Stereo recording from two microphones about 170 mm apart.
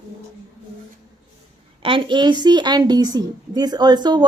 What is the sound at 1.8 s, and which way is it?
A woman's voice, 30° right (ahead or behind).